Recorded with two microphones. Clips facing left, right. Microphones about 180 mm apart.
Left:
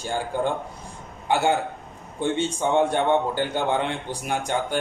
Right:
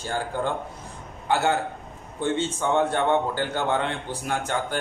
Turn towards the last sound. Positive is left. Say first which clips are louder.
# left 1 dB
turn(degrees=15)  # may be behind; listen again after turning